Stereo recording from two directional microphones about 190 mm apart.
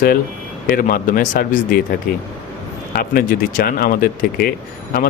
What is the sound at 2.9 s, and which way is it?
Speech, 50° left (ahead or behind).